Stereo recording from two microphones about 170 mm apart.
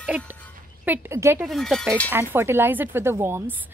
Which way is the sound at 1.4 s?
Centre (ahead or behind).